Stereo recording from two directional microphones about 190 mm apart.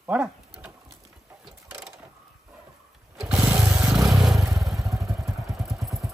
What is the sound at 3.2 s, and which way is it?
Lawn mower, 5° right (ahead or behind).